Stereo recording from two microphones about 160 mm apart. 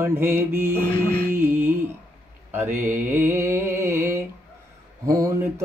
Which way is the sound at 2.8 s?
15° right (ahead or behind).